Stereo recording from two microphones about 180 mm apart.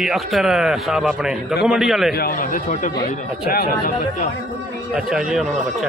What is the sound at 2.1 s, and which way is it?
Speech, 55° left (ahead or behind).